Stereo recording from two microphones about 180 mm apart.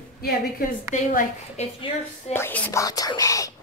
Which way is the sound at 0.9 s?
45° left (ahead or behind).